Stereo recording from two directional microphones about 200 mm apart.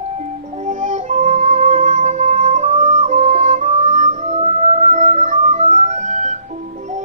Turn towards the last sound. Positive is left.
turn(degrees=-35)  # may be behind; listen again after turning